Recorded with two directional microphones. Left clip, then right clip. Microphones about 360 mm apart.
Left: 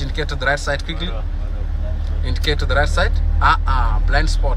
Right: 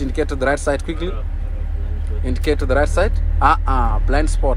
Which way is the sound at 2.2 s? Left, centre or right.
Centre.